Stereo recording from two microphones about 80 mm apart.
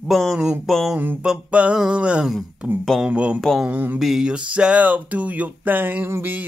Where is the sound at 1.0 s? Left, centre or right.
Right.